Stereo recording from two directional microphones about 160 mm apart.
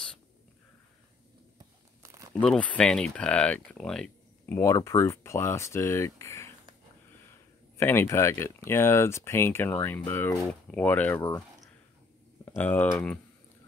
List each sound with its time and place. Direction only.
2.0 s crumpling: 20° right (ahead or behind)
2.4 s speech: 5° left (ahead or behind)
4.6 s speech: 20° left (ahead or behind)
12.4 s speech: 10° left (ahead or behind)